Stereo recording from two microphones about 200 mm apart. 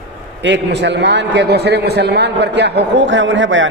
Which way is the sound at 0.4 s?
60° right (ahead or behind).